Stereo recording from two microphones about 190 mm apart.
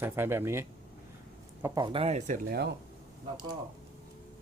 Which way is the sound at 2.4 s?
55° right (ahead or behind).